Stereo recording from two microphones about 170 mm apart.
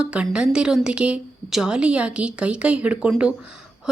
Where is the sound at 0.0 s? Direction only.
5° right (ahead or behind).